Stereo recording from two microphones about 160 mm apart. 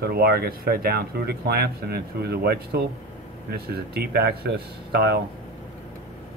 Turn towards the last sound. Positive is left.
turn(degrees=-90)